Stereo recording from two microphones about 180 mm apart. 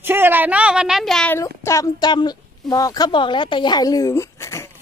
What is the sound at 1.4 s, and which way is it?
A woman's voice, 15° left (ahead or behind).